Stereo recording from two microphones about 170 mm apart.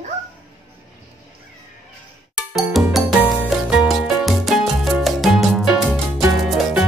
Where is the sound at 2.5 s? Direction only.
Centre (ahead or behind).